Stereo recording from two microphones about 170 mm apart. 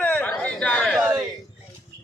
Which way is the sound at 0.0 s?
10° left (ahead or behind).